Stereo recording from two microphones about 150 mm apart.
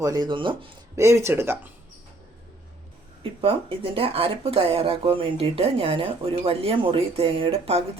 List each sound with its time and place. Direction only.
0.0 s speech: 25° right (ahead or behind)
0.9 s speech: 20° right (ahead or behind)
3.2 s speech: 35° right (ahead or behind)